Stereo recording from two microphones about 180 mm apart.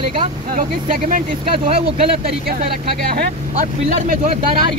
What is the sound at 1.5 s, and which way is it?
Speech, 30° right (ahead or behind).